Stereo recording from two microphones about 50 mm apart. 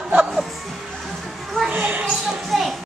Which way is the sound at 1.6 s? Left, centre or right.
Right.